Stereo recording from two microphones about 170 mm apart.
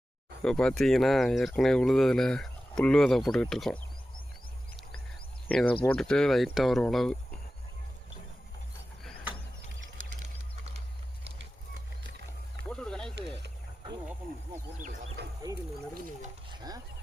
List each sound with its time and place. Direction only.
0.4 s speech: 5° left (ahead or behind)
5.5 s speech: 5° left (ahead or behind)
12.6 s wild animals: 5° left (ahead or behind)
13.1 s a sound: 80° right
16.5 s bird: 20° right (ahead or behind)